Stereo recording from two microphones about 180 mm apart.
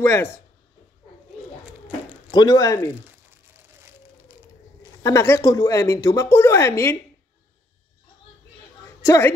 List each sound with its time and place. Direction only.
0.0 s speech: 15° left (ahead or behind)
2.3 s speech: 20° left (ahead or behind)
5.0 s speech: 15° left (ahead or behind)
8.8 s a sound: 15° left (ahead or behind)